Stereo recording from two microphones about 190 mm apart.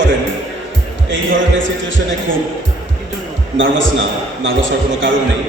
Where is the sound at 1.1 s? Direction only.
80° right.